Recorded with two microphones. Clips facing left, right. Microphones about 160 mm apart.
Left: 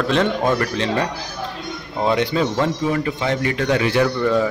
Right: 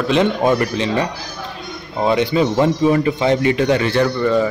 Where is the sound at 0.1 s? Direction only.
10° right (ahead or behind).